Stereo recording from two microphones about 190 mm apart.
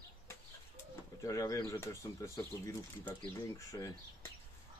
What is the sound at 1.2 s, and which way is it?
Speech, 15° left (ahead or behind).